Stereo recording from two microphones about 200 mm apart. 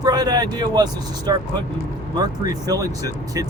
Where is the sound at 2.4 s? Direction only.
20° right (ahead or behind).